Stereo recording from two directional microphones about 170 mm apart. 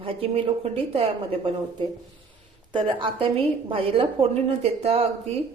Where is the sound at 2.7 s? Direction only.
30° right (ahead or behind).